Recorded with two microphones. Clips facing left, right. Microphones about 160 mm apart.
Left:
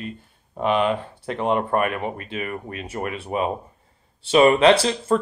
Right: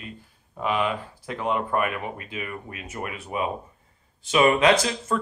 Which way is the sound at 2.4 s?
40° left (ahead or behind).